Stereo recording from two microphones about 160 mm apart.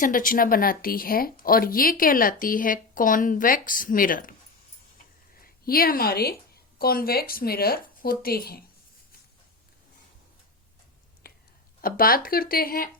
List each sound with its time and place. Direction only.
0.0 s speech: 60° left (ahead or behind)
5.4 s speech: 65° left (ahead or behind)
11.2 s whispering: 70° left (ahead or behind)
11.8 s speech: 65° left (ahead or behind)